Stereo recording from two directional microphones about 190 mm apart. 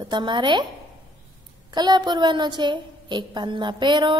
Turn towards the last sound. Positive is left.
turn(degrees=-25)  # may be behind; listen again after turning